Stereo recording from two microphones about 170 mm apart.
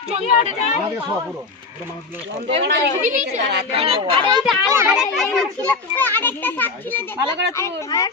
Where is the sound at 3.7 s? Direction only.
35° right (ahead or behind).